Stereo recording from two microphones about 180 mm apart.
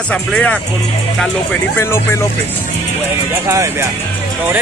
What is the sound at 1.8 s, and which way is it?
Speech, 15° left (ahead or behind).